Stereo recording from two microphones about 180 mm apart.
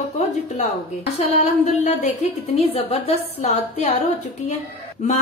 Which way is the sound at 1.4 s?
40° left (ahead or behind).